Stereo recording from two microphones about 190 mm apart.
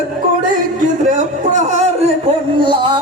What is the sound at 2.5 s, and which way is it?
Speech, 25° right (ahead or behind).